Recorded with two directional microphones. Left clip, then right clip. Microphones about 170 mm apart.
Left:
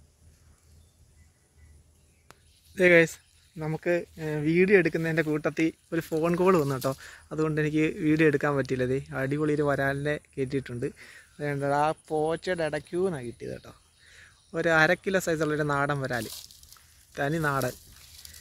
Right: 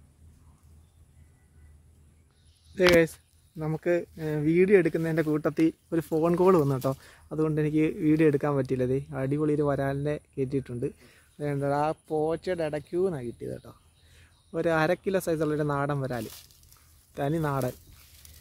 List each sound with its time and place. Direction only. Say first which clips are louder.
2.7 s speech: left 1 dB; centre (ahead or behind)
5.4 s speech: right 2 dB; 25° right (ahead or behind)
6.6 s speech: right 1 dB; 5° right (ahead or behind)